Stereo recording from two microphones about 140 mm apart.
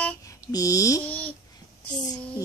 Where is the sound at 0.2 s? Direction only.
25° left (ahead or behind).